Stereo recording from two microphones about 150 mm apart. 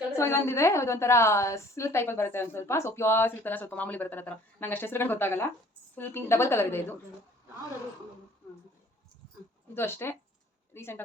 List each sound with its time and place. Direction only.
0.2 s a woman's voice: 15° left (ahead or behind)
9.7 s a woman's voice: 15° left (ahead or behind)